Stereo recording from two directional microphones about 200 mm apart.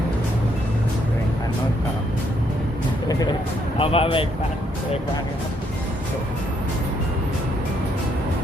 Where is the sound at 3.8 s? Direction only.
30° left (ahead or behind).